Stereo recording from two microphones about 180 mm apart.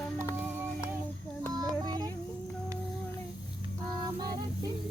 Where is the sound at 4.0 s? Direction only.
20° right (ahead or behind).